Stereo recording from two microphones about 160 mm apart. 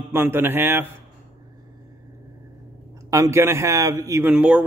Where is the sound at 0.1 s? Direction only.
15° right (ahead or behind).